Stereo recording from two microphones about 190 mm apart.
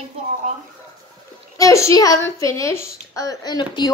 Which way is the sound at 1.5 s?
15° left (ahead or behind).